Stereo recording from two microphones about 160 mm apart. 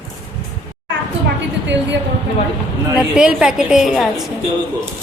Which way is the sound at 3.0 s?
5° right (ahead or behind).